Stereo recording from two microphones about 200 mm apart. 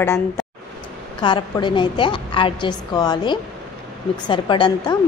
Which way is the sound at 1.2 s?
25° left (ahead or behind).